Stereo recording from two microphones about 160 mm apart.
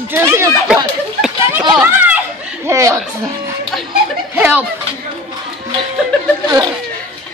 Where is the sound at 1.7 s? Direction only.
10° right (ahead or behind).